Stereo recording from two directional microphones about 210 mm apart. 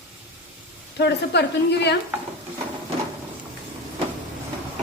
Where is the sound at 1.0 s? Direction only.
55° left (ahead or behind).